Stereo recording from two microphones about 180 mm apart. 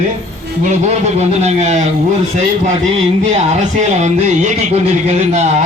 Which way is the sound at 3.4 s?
40° right (ahead or behind).